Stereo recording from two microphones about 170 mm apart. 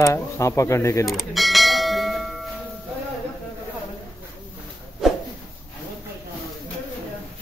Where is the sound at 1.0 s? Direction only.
Centre (ahead or behind).